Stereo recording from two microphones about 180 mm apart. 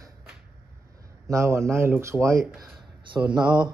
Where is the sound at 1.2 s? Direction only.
15° right (ahead or behind).